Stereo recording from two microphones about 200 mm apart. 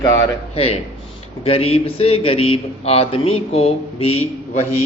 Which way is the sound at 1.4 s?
30° left (ahead or behind).